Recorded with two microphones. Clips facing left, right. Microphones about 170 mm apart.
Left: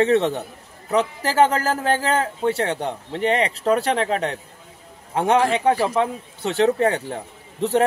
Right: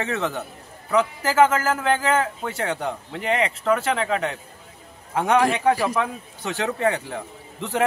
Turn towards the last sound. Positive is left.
turn(degrees=35)  # may be behind; listen again after turning